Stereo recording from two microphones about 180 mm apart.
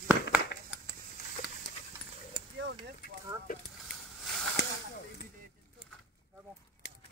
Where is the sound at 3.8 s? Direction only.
Centre (ahead or behind).